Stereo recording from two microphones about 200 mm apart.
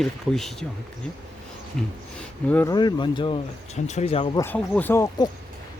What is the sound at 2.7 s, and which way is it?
Speech, 20° left (ahead or behind).